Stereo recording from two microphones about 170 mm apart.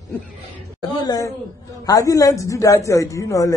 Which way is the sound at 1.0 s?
20° left (ahead or behind).